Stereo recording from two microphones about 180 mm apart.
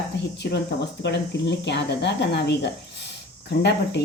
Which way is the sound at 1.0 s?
70° left (ahead or behind).